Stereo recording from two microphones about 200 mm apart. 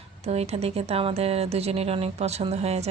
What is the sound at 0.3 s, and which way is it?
Speech, 30° right (ahead or behind).